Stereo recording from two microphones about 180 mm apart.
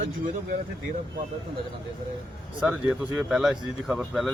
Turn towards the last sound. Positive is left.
turn(degrees=0)  # may be behind; listen again after turning